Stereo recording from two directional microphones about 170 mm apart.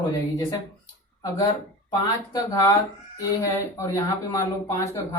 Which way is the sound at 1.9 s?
20° left (ahead or behind).